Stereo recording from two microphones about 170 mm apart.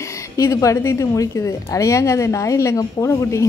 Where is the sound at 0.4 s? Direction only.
20° left (ahead or behind).